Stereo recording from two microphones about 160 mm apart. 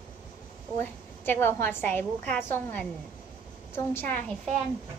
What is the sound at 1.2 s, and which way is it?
A woman's voice, 15° left (ahead or behind).